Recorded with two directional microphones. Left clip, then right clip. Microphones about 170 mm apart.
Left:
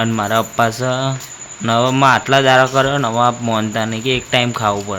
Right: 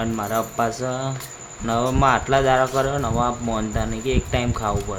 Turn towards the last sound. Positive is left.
turn(degrees=30)  # may be behind; listen again after turning